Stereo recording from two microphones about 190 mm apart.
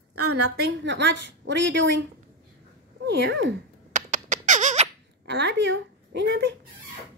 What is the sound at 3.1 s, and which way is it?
Speech, 70° right (ahead or behind).